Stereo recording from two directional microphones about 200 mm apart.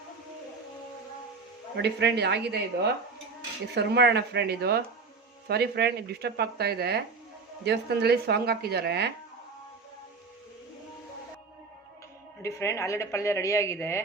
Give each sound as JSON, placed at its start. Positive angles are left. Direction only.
{"t": 1.7, "sound": "speech", "side_deg": -55}
{"t": 3.8, "sound": "speech", "side_deg": -55}
{"t": 12.4, "sound": "a man's voice", "side_deg": 15}